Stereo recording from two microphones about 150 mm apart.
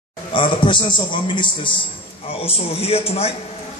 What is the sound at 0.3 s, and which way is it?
A man's voice, 35° left (ahead or behind).